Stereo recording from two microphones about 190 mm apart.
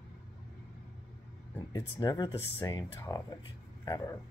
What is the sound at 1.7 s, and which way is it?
Speech, 20° left (ahead or behind).